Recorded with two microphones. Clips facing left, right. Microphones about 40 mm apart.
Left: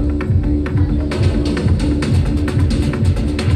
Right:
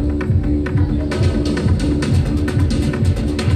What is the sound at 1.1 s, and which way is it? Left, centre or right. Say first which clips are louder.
Music: even; left.